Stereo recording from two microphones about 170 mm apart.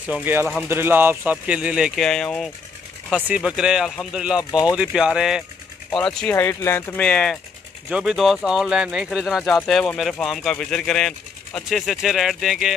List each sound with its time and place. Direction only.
0.1 s speech: 10° right (ahead or behind)
4.5 s speech: 25° left (ahead or behind)
4.7 s speech: 5° right (ahead or behind)
6.3 s speech: 15° left (ahead or behind)
7.9 s speech: 5° right (ahead or behind)